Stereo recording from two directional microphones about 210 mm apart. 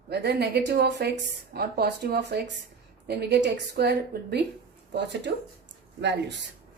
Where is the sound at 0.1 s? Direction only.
50° right (ahead or behind).